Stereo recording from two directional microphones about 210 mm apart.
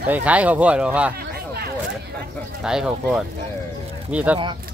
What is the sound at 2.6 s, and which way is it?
Speech, 5° right (ahead or behind).